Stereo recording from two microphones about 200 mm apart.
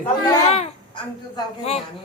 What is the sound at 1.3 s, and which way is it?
Speech, 30° left (ahead or behind).